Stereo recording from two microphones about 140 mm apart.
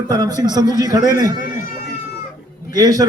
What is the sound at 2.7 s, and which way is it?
Speech, 25° right (ahead or behind).